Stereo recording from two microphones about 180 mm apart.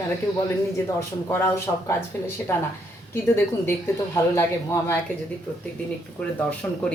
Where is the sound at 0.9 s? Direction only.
15° left (ahead or behind).